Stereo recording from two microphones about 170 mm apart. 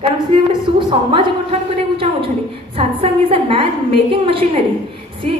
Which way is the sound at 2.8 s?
35° right (ahead or behind).